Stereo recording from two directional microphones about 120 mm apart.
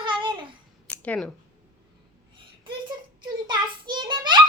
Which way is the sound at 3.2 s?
40° right (ahead or behind).